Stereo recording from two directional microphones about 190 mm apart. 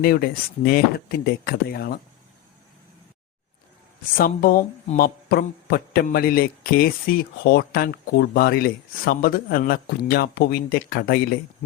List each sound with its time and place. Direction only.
0.0 s speech: 55° left (ahead or behind)
4.2 s a man's voice: 50° left (ahead or behind)